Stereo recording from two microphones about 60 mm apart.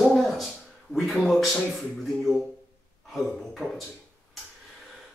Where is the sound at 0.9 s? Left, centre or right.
Centre.